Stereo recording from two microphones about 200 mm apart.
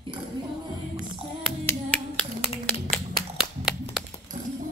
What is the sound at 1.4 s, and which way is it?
Clapping, 5° left (ahead or behind).